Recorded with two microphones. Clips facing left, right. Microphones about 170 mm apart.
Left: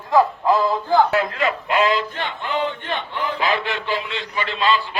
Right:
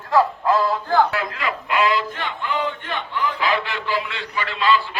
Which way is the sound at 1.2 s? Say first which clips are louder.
Left 4 dB; 25° left (ahead or behind).